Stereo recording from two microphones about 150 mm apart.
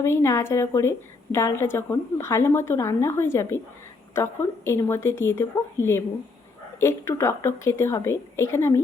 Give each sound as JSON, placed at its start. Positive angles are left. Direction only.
{"t": 0.0, "sound": "a woman's voice", "side_deg": 15}
{"t": 6.7, "sound": "a woman's voice", "side_deg": 20}